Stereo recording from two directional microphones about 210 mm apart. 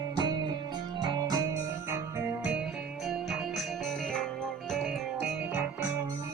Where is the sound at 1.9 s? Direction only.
10° right (ahead or behind).